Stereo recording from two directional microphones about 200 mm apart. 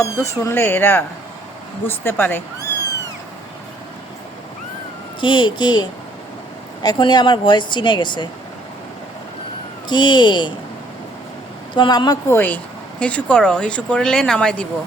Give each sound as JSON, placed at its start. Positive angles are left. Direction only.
{"t": 0.0, "sound": "speech", "side_deg": 15}
{"t": 5.2, "sound": "speech", "side_deg": 25}
{"t": 9.9, "sound": "speech", "side_deg": 20}
{"t": 11.7, "sound": "speech", "side_deg": 20}